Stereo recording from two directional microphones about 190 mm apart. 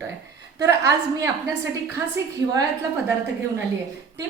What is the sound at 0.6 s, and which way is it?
Speech, 15° right (ahead or behind).